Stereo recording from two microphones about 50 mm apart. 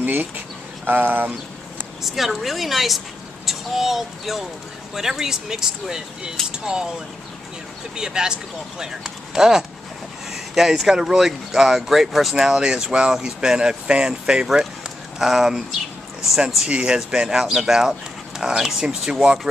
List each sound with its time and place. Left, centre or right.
0.0 s speech: right
2.0 s a woman's voice: centre
7.9 s speech: centre